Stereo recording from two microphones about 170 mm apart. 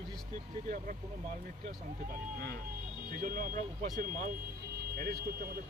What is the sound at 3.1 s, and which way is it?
Speech, 55° right (ahead or behind).